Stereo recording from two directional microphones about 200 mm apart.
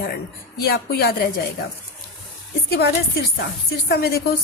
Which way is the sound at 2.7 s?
55° left (ahead or behind).